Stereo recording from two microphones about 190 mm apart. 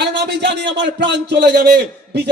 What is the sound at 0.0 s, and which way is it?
A man's voice, 65° right (ahead or behind).